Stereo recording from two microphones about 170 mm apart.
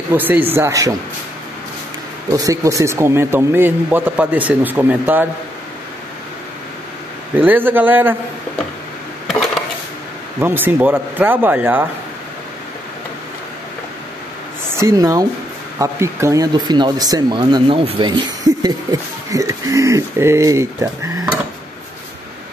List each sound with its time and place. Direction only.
0.1 s speech: 10° right (ahead or behind)
2.3 s speech: 20° right (ahead or behind)
7.3 s speech: 10° right (ahead or behind)
10.4 s speech: 10° right (ahead or behind)
14.8 s speech: 20° right (ahead or behind)